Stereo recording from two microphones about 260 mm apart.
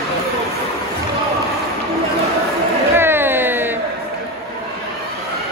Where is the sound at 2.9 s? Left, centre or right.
Centre.